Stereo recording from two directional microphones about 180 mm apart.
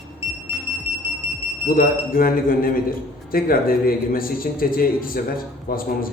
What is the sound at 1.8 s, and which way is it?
A man's voice, 55° left (ahead or behind).